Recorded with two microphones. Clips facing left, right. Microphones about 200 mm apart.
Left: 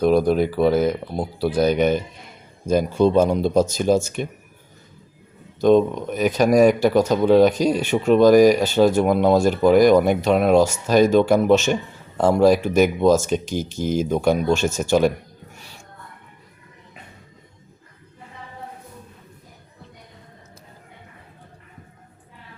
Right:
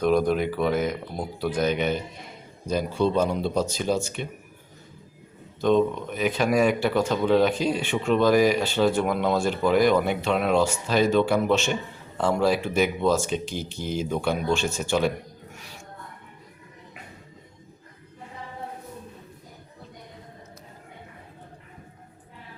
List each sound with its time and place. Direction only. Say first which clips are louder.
0.0 s speech: left 4 dB; 35° left (ahead or behind)
5.5 s speech: left 5 dB; 40° left (ahead or behind)